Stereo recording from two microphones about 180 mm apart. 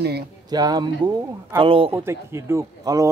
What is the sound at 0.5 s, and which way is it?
Speech, 20° right (ahead or behind).